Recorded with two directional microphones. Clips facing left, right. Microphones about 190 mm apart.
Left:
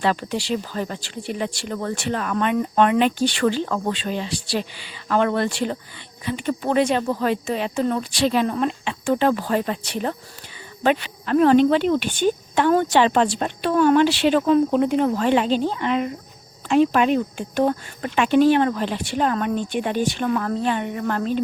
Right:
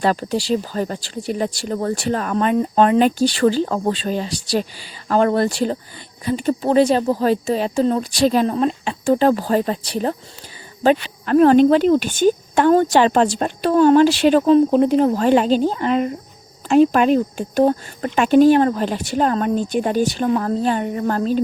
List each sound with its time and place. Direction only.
0.0 s speech: 40° right (ahead or behind)
11.3 s speech: 45° right (ahead or behind)
14.4 s speech: 30° right (ahead or behind)